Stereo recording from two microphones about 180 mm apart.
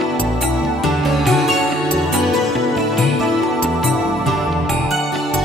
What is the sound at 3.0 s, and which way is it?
Music, centre (ahead or behind).